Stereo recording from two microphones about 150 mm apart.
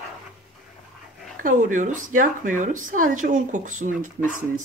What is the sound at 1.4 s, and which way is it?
Speech, 60° right (ahead or behind).